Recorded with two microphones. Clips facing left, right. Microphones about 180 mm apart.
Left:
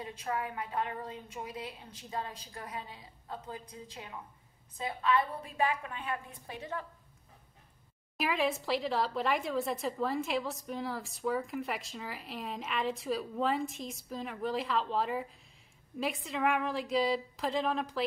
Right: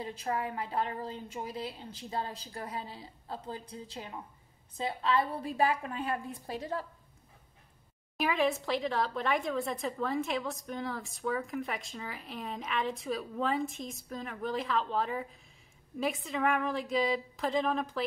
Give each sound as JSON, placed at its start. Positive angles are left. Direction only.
{"t": 0.0, "sound": "a woman's voice", "side_deg": -30}
{"t": 8.2, "sound": "speech", "side_deg": 0}